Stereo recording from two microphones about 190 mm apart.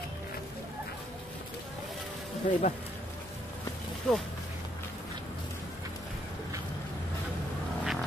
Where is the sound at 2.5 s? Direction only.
40° left (ahead or behind).